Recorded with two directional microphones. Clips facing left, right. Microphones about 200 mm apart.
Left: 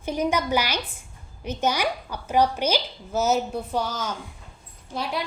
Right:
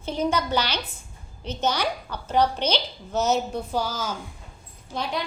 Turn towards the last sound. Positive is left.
turn(degrees=5)  # may be behind; listen again after turning